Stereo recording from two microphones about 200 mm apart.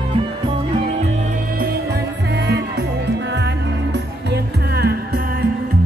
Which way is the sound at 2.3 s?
55° right (ahead or behind).